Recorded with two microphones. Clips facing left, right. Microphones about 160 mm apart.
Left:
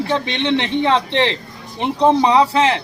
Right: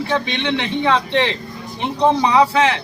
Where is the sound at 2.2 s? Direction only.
25° left (ahead or behind).